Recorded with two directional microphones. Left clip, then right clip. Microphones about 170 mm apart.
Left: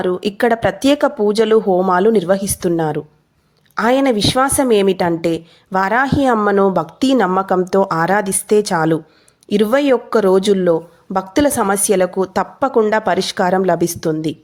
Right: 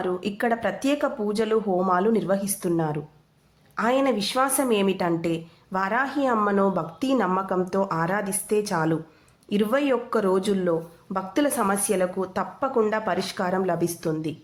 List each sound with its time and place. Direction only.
0.0 s a woman's voice: 50° left (ahead or behind)